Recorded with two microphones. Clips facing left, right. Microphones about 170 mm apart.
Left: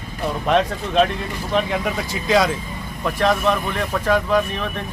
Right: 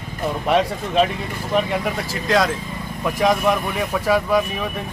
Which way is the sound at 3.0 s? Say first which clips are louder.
Right 1 dB; 10° right (ahead or behind).